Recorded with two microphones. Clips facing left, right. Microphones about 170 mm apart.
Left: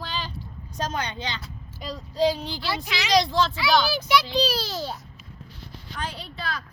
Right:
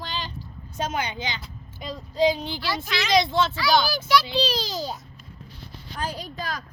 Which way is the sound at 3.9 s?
20° left (ahead or behind).